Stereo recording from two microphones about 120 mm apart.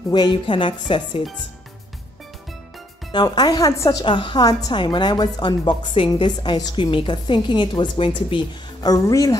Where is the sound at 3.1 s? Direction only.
35° left (ahead or behind).